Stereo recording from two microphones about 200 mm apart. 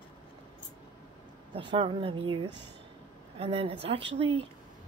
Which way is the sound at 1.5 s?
25° right (ahead or behind).